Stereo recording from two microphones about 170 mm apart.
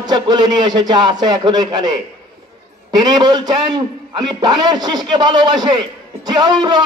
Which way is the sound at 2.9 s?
25° right (ahead or behind).